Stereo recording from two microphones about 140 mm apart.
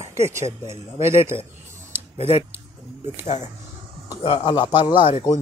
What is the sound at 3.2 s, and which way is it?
Speech, 55° left (ahead or behind).